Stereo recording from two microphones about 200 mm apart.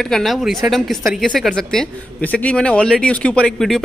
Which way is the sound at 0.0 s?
Centre (ahead or behind).